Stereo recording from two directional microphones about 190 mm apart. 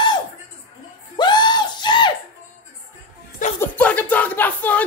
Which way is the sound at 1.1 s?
25° left (ahead or behind).